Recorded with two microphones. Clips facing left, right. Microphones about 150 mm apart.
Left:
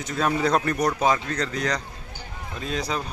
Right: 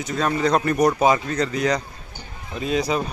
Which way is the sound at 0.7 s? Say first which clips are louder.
Right 5 dB; 10° right (ahead or behind).